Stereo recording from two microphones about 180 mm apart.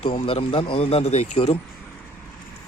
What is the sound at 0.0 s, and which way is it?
Speech, 30° left (ahead or behind).